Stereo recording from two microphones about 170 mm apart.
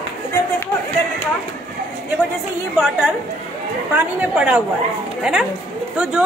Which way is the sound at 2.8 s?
5° right (ahead or behind).